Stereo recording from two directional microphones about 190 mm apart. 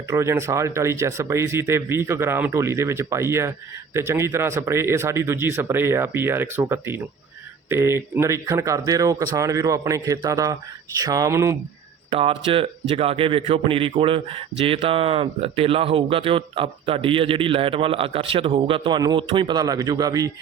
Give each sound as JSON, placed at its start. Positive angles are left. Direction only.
{"t": 0.1, "sound": "speech", "side_deg": -15}
{"t": 12.1, "sound": "a man's voice", "side_deg": -30}